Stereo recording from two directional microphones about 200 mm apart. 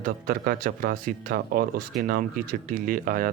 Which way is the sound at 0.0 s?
45° right (ahead or behind).